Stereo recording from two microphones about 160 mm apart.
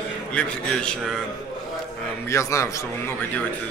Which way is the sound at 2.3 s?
20° left (ahead or behind).